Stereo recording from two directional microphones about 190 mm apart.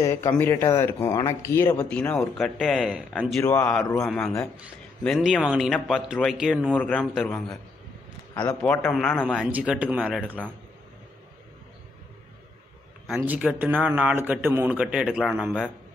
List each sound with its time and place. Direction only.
0.0 s a man's voice: 20° left (ahead or behind); by 6.7 s 5° right (ahead or behind)
6.7 s speech: 10° left (ahead or behind)
8.6 s speech: 5° left (ahead or behind)
13.0 s a man's voice: 5° right (ahead or behind)